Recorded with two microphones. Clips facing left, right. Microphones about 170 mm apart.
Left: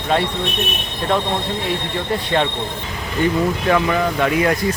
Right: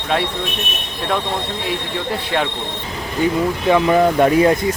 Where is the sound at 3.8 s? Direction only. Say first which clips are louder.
Right 5 dB; 35° right (ahead or behind).